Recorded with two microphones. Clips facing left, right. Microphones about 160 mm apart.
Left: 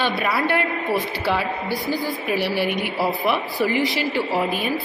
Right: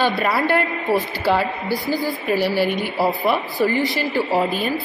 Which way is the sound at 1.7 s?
25° left (ahead or behind).